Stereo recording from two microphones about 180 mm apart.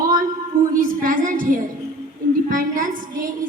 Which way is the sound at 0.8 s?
50° right (ahead or behind).